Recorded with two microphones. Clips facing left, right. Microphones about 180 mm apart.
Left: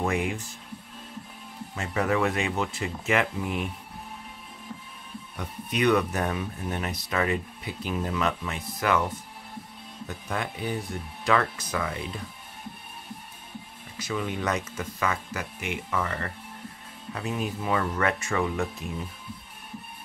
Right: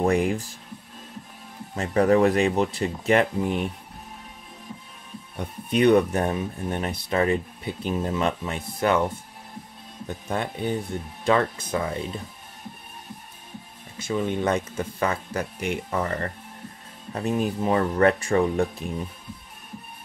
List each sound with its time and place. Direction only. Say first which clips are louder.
0.0 s speech: right 6 dB; 35° right (ahead or behind)
1.8 s speech: right 7 dB; 35° right (ahead or behind)
5.3 s speech: right 7 dB; 30° right (ahead or behind)
10.0 s speech: right 4 dB; 30° right (ahead or behind)
13.9 s speech: right 5 dB; 25° right (ahead or behind)